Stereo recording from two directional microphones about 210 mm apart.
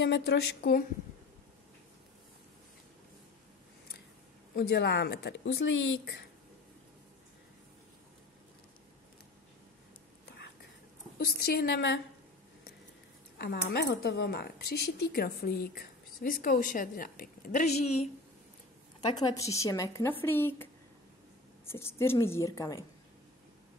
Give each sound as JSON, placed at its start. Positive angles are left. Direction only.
{"t": 0.0, "sound": "speech", "side_deg": 55}
{"t": 4.6, "sound": "speech", "side_deg": 50}
{"t": 11.1, "sound": "speech", "side_deg": 45}
{"t": 13.4, "sound": "speech", "side_deg": 50}
{"t": 18.9, "sound": "speech", "side_deg": 20}
{"t": 21.6, "sound": "speech", "side_deg": 10}